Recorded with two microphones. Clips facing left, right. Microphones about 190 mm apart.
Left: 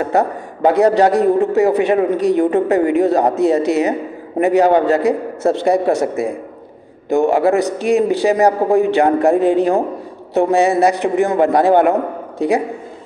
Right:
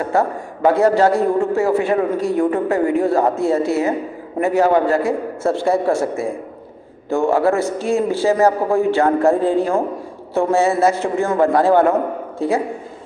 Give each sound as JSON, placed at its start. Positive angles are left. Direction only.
{"t": 0.0, "sound": "a man's voice", "side_deg": 20}